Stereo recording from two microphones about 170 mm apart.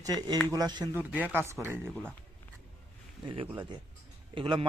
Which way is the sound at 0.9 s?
10° right (ahead or behind).